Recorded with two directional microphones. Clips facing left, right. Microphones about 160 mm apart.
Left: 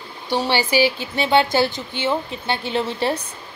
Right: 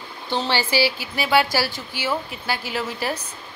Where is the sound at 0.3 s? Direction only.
15° left (ahead or behind).